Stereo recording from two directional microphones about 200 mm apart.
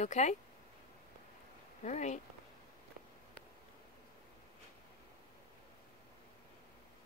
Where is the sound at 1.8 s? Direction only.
35° left (ahead or behind).